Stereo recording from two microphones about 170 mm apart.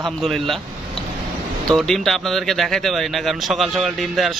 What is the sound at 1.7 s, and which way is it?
A man's voice, centre (ahead or behind).